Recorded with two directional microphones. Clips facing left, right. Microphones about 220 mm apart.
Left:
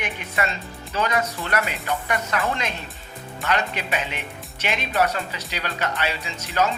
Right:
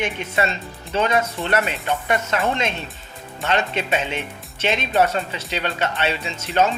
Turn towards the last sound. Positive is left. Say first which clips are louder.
# right 4 dB
turn(degrees=-25)  # may be behind; listen again after turning